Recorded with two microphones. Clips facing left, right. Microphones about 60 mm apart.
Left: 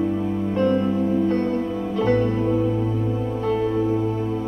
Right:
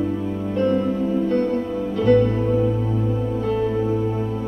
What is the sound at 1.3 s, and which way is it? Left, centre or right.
Music, left.